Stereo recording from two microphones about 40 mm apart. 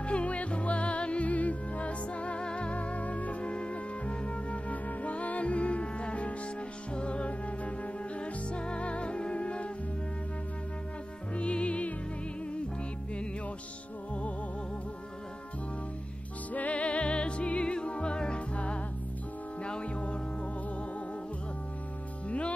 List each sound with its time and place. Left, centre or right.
0.0 s music: left
11.3 s music: left
16.5 s music: left